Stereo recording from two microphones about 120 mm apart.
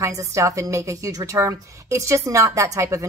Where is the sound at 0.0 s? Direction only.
25° right (ahead or behind).